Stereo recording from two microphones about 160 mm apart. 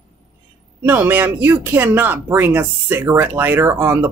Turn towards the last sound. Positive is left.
turn(degrees=-15)  # may be behind; listen again after turning